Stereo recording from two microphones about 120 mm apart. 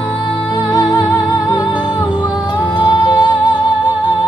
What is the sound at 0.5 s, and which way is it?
Music, 30° left (ahead or behind).